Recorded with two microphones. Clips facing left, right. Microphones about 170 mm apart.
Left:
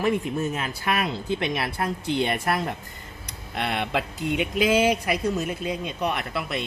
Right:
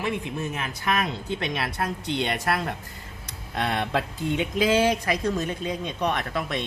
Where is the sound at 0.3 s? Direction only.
30° left (ahead or behind).